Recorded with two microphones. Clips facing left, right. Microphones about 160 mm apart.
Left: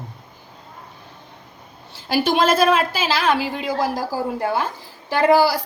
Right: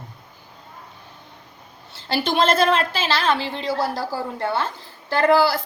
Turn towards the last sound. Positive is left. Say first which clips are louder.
# left 2 dB
turn(degrees=15)  # may be behind; listen again after turning